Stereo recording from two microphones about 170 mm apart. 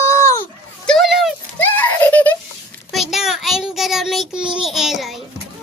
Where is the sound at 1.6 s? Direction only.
10° left (ahead or behind).